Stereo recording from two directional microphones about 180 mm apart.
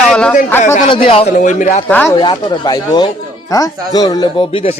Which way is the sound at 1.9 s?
10° left (ahead or behind).